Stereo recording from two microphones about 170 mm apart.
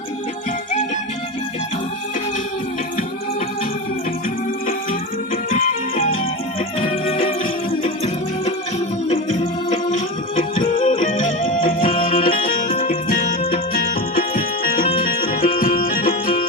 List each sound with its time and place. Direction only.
6.7 s music: 40° left (ahead or behind); by 16.5 s 55° left (ahead or behind)